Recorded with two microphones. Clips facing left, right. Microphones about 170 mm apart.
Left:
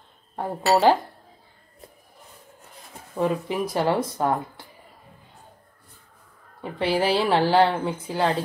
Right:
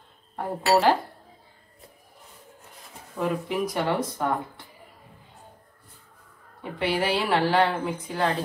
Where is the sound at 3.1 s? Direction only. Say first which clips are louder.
Left 2 dB; 30° left (ahead or behind).